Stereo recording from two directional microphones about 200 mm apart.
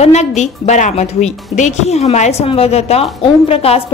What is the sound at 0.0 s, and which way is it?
A woman's voice, 35° left (ahead or behind).